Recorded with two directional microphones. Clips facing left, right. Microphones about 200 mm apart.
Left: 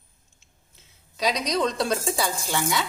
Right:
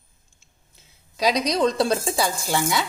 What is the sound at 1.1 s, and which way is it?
A woman's voice, 35° right (ahead or behind).